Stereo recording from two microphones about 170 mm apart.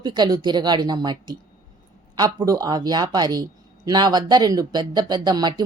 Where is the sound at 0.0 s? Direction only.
25° right (ahead or behind).